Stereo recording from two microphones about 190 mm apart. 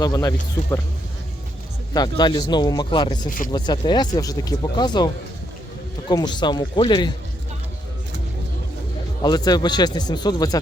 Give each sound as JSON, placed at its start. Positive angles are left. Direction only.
{"t": 0.0, "sound": "speech", "side_deg": 20}
{"t": 1.9, "sound": "speech", "side_deg": 20}
{"t": 3.2, "sound": "speech", "side_deg": 45}
{"t": 3.5, "sound": "speech", "side_deg": 20}
{"t": 6.1, "sound": "speech", "side_deg": 20}
{"t": 9.2, "sound": "speech", "side_deg": 20}